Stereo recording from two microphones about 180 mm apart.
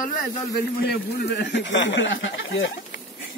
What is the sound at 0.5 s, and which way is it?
A man's voice, 60° left (ahead or behind).